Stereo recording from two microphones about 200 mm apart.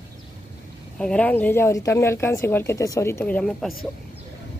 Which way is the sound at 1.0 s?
5° left (ahead or behind).